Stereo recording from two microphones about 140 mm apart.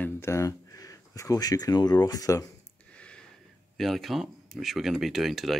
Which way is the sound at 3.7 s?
Centre (ahead or behind).